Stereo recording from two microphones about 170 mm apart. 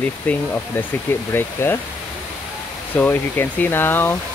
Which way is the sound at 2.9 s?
10° left (ahead or behind).